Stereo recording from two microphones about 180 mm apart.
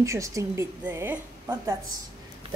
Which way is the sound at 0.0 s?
15° right (ahead or behind).